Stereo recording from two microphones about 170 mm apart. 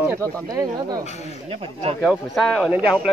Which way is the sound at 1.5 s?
35° right (ahead or behind).